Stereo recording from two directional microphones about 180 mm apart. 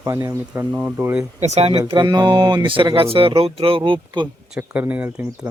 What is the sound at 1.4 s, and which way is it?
Speech, 35° right (ahead or behind).